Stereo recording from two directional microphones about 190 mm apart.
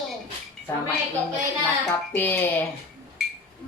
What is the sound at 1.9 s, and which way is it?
Speech, 10° left (ahead or behind).